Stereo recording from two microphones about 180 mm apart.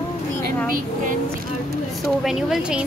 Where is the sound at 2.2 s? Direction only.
Centre (ahead or behind).